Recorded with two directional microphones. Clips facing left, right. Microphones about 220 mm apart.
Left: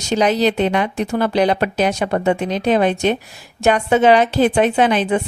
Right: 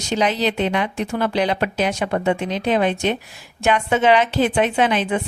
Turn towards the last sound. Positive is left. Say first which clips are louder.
# left 3 dB
turn(degrees=40)  # may be behind; listen again after turning